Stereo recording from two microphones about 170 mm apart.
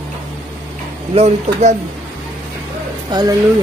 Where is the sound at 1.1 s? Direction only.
40° right (ahead or behind).